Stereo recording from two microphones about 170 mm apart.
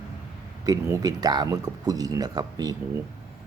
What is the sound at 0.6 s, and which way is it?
Speech, 20° right (ahead or behind).